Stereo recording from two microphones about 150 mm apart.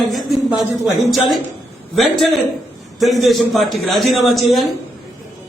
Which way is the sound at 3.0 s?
Centre (ahead or behind).